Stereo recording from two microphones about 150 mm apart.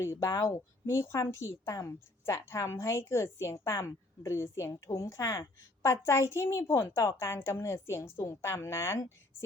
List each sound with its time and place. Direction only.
0.0 s a woman's voice: 20° left (ahead or behind)